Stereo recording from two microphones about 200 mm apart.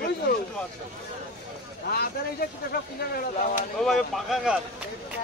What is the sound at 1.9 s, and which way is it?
Speech, 50° left (ahead or behind).